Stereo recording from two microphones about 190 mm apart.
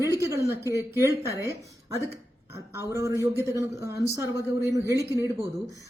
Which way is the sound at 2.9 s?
15° right (ahead or behind).